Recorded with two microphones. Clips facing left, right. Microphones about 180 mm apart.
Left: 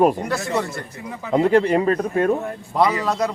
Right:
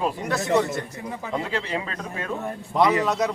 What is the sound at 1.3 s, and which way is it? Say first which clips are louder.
A man's voice: left 13 dB; 50° left (ahead or behind).